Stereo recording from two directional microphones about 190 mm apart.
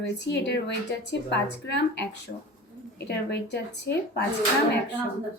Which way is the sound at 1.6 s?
65° left (ahead or behind).